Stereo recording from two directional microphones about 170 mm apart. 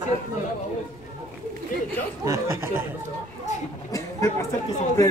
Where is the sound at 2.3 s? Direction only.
15° right (ahead or behind).